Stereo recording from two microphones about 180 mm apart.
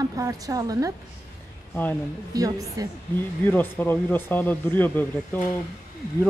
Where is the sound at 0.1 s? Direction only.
20° right (ahead or behind).